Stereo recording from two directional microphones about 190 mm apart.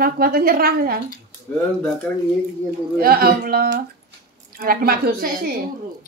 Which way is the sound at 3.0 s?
50° right (ahead or behind).